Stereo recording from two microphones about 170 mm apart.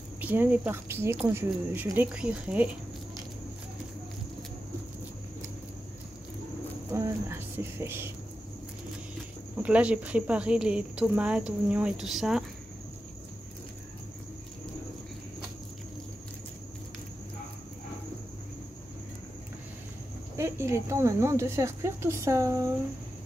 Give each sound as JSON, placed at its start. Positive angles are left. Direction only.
{"t": 0.2, "sound": "speech", "side_deg": -10}
{"t": 6.9, "sound": "a sound", "side_deg": -15}
{"t": 9.6, "sound": "speech", "side_deg": -5}
{"t": 20.3, "sound": "speech", "side_deg": -15}